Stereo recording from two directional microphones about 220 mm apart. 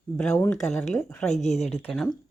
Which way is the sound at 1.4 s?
30° left (ahead or behind).